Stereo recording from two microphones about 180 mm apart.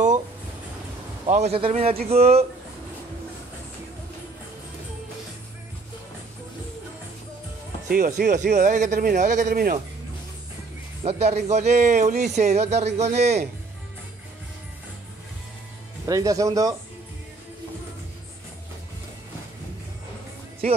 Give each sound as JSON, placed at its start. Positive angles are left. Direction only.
{"t": 1.2, "sound": "speech", "side_deg": -35}
{"t": 7.9, "sound": "speech", "side_deg": -50}
{"t": 11.0, "sound": "speech", "side_deg": -35}
{"t": 16.1, "sound": "speech", "side_deg": -20}